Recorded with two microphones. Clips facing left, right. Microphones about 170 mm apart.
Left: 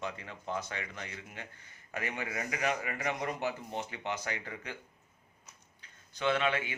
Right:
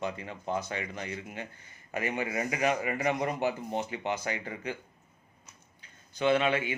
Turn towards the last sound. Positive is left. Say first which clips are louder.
# right 5 dB
turn(degrees=-10)  # may be behind; listen again after turning